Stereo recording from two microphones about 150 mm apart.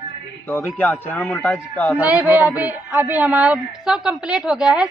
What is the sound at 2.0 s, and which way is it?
Speech, 10° right (ahead or behind).